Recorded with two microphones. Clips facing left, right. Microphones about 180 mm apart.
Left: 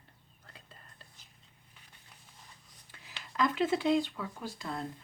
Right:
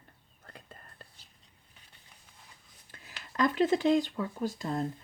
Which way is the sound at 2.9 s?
45° right (ahead or behind).